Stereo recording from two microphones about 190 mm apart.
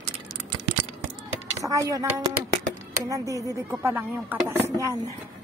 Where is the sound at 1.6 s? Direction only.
15° right (ahead or behind).